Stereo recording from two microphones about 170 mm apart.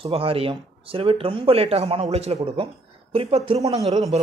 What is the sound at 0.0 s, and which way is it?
A man's voice, 35° right (ahead or behind).